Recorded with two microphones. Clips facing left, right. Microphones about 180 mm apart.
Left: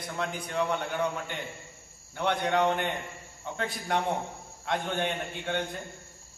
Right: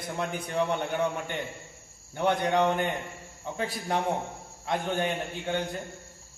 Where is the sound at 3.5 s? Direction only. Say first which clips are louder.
Right 1 dB; 5° right (ahead or behind).